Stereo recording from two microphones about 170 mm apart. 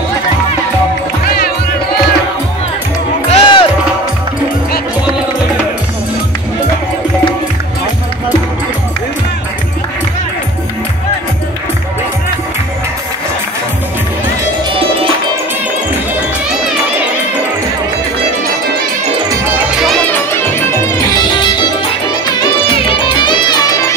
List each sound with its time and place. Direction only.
3.3 s music: 25° left (ahead or behind)
20.1 s music: 15° left (ahead or behind)
21.3 s music: 25° left (ahead or behind)